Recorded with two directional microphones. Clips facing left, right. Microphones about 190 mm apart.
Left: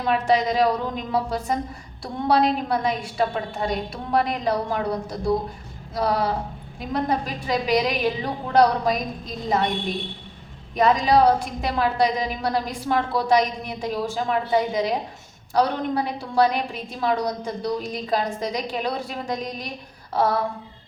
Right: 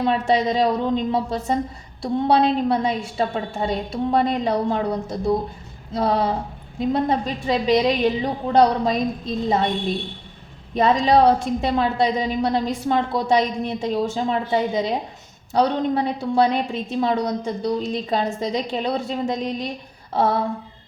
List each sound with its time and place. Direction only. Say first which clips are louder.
0.0 s a woman's voice: right 1 dB; 25° right (ahead or behind)
10.8 s a woman's voice: right 2 dB; 25° right (ahead or behind)